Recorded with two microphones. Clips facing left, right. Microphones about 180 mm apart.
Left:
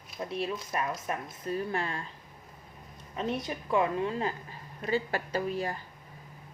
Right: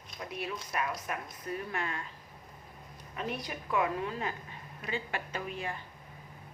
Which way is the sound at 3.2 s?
25° left (ahead or behind).